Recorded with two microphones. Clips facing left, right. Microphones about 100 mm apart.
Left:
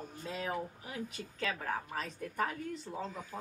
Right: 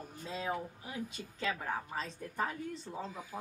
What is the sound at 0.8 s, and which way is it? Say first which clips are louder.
A woman's voice: even; 25° right (ahead or behind).